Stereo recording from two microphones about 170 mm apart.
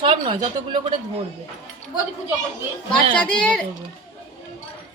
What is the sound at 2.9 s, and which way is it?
Speech, 5° left (ahead or behind).